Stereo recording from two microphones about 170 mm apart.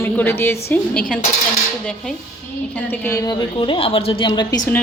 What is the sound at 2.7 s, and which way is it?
A woman's voice, 10° left (ahead or behind).